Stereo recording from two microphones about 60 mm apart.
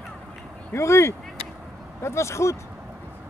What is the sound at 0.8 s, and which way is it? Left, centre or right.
Speech, left.